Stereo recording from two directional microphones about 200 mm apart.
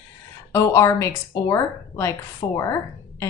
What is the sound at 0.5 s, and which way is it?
A woman's voice, 15° left (ahead or behind).